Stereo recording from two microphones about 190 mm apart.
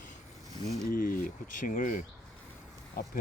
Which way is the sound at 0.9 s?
45° left (ahead or behind).